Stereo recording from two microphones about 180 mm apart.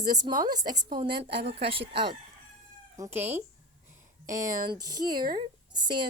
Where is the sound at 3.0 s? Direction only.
15° right (ahead or behind).